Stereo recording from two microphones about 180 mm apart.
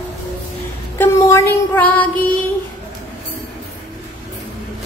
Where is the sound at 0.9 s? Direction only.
15° left (ahead or behind).